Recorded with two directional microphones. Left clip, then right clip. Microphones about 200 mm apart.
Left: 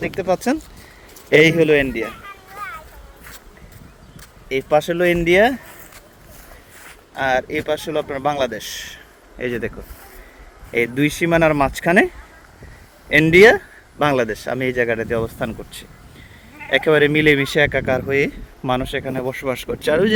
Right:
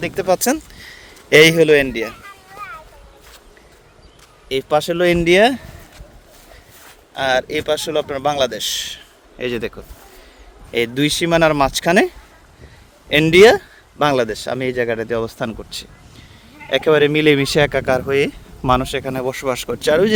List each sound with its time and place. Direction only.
0.0 s speech: 45° right (ahead or behind)
0.4 s a sound: 55° right (ahead or behind)
1.4 s speech: 50° right (ahead or behind)
1.6 s a man's voice: 35° right (ahead or behind)
2.6 s a sound: 30° left (ahead or behind)
4.4 s speech: 10° right (ahead or behind)
6.8 s speech: 25° right (ahead or behind)